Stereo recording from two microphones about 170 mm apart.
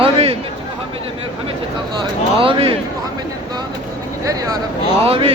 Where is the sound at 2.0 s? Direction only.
30° right (ahead or behind).